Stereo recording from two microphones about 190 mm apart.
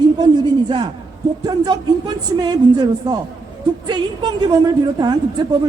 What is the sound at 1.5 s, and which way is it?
A woman's voice, 20° right (ahead or behind).